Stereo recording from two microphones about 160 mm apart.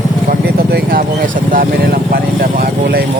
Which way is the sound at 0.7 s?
65° right (ahead or behind).